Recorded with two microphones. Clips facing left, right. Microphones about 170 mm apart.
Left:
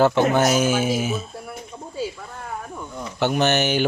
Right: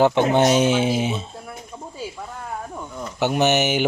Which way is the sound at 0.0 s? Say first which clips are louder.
Right 1 dB; 20° right (ahead or behind).